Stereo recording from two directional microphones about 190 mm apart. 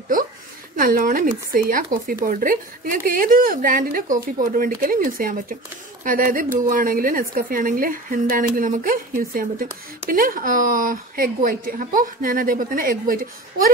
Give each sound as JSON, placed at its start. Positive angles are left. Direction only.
{"t": 0.7, "sound": "speech", "side_deg": -50}